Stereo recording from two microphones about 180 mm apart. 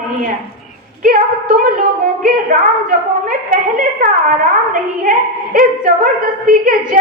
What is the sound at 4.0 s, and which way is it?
Speech, 50° right (ahead or behind).